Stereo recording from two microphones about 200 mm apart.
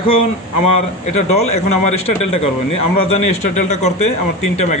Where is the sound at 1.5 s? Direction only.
30° left (ahead or behind).